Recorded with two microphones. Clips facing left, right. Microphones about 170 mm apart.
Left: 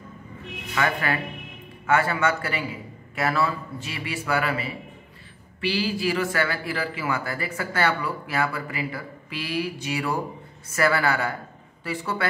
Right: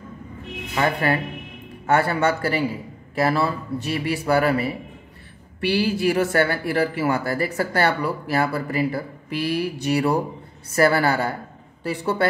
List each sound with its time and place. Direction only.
0.7 s speech: 30° right (ahead or behind)
5.7 s speech: 55° right (ahead or behind); by 12.3 s 35° right (ahead or behind)